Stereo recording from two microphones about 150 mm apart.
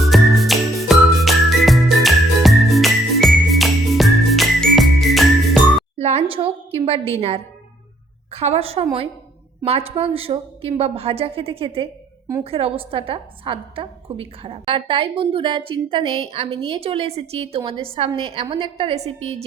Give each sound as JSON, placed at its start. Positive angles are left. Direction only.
{"t": 0.0, "sound": "music", "side_deg": 0}
{"t": 6.0, "sound": "a sound", "side_deg": -45}
{"t": 6.3, "sound": "a woman's voice", "side_deg": -40}